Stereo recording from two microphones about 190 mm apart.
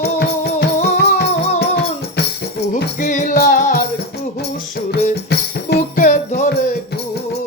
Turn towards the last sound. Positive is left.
turn(degrees=40)  # may be behind; listen again after turning